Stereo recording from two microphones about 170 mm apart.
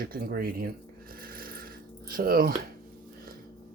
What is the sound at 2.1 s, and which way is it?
Speech, 60° right (ahead or behind).